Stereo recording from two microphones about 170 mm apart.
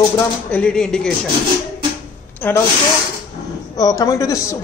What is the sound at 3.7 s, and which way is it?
Speech, 20° left (ahead or behind).